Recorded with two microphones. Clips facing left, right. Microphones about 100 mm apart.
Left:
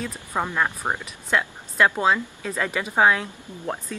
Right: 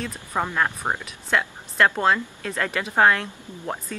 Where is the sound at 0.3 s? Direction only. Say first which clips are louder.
Even; 10° left (ahead or behind).